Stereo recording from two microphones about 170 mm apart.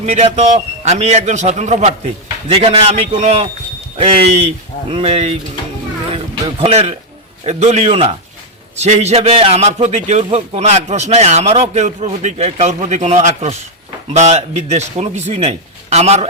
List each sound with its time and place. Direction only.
0.0 s a man's voice: 40° right (ahead or behind)
6.6 s a man's voice: 35° right (ahead or behind)